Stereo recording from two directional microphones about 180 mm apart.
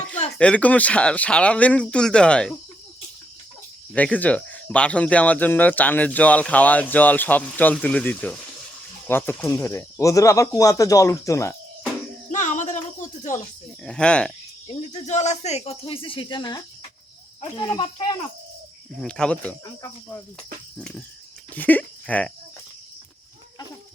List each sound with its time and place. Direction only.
0.3 s speech: 5° left (ahead or behind)
3.9 s speech: 10° left (ahead or behind)
12.3 s music: 45° left (ahead or behind)
13.8 s speech: 5° left (ahead or behind)
14.7 s speech: 40° left (ahead or behind); by 18.0 s 20° left (ahead or behind)
18.9 s speech: 5° left (ahead or behind)